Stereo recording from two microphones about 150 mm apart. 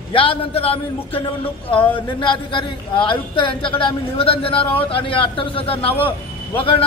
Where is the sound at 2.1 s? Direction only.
35° left (ahead or behind).